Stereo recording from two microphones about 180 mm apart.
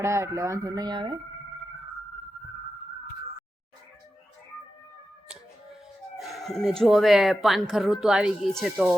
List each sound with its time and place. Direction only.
0.0 s speech: 15° right (ahead or behind)
6.1 s speech: centre (ahead or behind)